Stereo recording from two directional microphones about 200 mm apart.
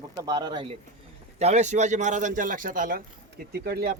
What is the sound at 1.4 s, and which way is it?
A man's voice, 35° right (ahead or behind).